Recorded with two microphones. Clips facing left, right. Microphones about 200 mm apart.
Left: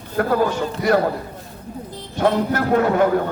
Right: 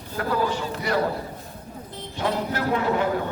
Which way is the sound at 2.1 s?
50° left (ahead or behind).